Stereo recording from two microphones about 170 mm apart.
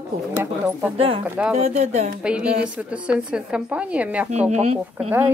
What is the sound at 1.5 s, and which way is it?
Speech, 40° right (ahead or behind).